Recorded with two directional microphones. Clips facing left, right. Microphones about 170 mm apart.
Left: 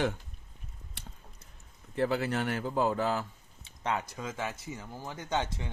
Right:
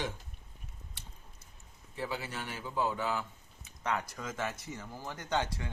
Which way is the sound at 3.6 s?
25° left (ahead or behind).